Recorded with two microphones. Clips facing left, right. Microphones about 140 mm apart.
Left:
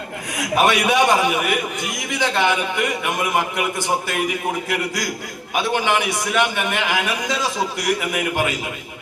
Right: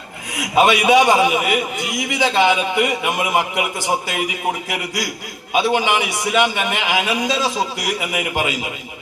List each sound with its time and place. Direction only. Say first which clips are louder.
0.5 s a man's voice: right 4 dB; 20° right (ahead or behind)